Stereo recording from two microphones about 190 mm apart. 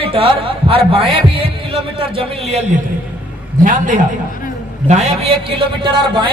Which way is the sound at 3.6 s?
45° right (ahead or behind).